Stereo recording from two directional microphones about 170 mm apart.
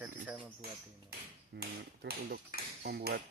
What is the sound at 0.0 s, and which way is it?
Cricket, 10° right (ahead or behind).